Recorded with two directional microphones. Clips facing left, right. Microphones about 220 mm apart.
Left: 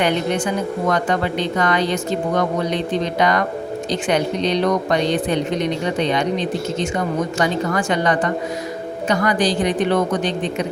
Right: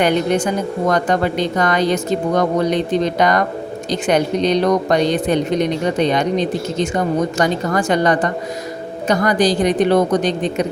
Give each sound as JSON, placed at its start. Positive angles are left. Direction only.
{"t": 0.0, "sound": "a woman's voice", "side_deg": -40}